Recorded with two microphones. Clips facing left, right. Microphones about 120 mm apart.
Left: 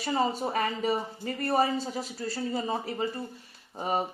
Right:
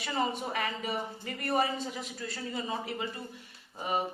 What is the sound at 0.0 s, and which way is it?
Speech, 35° left (ahead or behind).